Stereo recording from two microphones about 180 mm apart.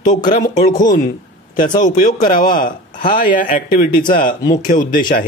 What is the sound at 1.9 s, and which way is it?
A man's voice, 50° left (ahead or behind).